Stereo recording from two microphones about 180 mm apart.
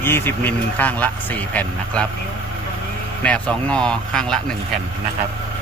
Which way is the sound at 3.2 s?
5° left (ahead or behind).